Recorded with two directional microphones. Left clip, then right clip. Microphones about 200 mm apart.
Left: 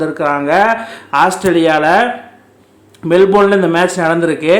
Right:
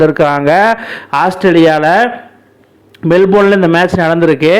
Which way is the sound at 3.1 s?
30° right (ahead or behind).